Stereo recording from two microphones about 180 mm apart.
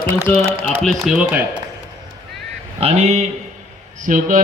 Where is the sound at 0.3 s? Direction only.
10° left (ahead or behind); by 1.5 s 5° right (ahead or behind).